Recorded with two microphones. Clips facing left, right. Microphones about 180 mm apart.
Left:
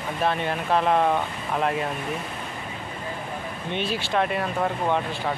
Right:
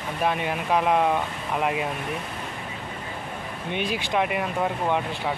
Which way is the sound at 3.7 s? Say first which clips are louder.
Even; 15° right (ahead or behind).